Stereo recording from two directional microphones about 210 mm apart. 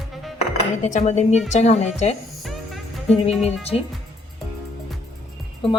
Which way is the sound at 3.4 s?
30° left (ahead or behind).